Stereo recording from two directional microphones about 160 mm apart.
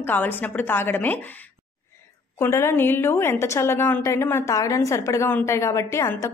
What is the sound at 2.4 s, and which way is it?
A woman's voice, 15° left (ahead or behind).